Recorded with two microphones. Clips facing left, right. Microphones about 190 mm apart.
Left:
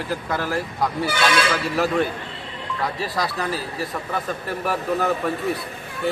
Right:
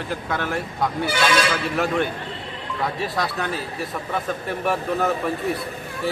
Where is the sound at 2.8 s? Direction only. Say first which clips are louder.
Even; centre (ahead or behind).